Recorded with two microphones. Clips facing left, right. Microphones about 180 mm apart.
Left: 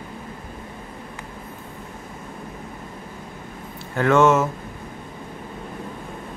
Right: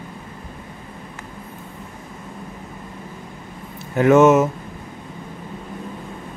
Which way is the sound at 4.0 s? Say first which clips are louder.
Right 4 dB; 20° right (ahead or behind).